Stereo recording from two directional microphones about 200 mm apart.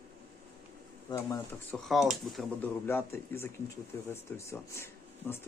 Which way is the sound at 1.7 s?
Centre (ahead or behind).